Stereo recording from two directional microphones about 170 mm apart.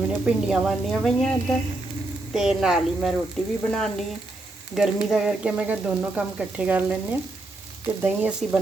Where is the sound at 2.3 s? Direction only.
Centre (ahead or behind).